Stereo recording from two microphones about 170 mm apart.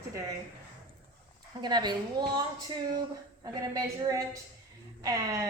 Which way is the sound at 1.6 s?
25° right (ahead or behind).